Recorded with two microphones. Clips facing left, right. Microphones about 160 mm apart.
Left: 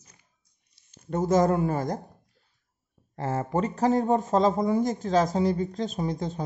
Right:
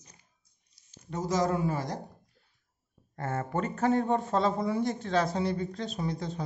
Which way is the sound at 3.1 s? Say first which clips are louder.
Left 5 dB; 30° left (ahead or behind).